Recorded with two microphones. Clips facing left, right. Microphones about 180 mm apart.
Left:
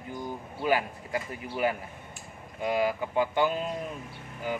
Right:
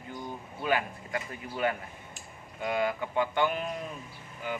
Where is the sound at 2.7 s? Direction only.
10° left (ahead or behind).